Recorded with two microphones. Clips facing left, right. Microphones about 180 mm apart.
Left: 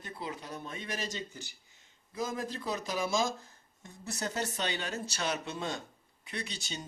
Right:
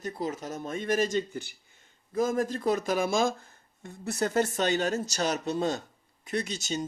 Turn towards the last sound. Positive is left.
turn(degrees=-45)  # may be behind; listen again after turning